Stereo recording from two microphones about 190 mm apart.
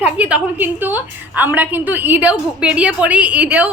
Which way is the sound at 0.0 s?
5° right (ahead or behind).